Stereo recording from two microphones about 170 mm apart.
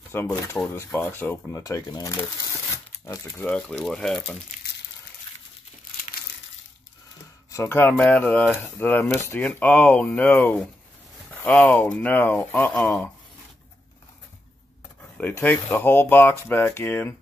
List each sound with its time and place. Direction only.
0.1 s speech: 15° left (ahead or behind)
3.1 s speech: 10° left (ahead or behind)
7.5 s speech: 15° left (ahead or behind)
15.1 s speech: 10° left (ahead or behind)